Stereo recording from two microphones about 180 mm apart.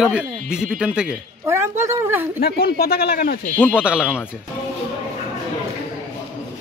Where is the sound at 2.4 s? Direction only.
60° left (ahead or behind).